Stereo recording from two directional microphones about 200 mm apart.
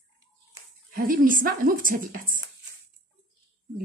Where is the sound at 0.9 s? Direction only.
45° right (ahead or behind).